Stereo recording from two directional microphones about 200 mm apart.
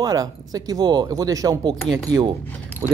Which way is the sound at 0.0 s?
20° right (ahead or behind).